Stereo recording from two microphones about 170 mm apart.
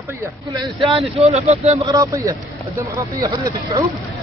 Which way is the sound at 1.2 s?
40° right (ahead or behind).